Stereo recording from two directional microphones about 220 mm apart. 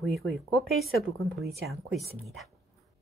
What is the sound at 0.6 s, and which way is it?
Speech, 45° right (ahead or behind).